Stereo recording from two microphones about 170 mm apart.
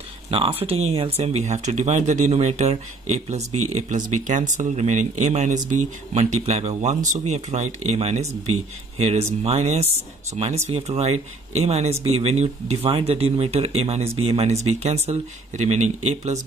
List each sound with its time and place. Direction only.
0.3 s speech: 35° right (ahead or behind)